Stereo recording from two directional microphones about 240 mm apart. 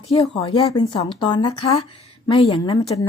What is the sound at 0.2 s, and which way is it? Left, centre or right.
Speech, left.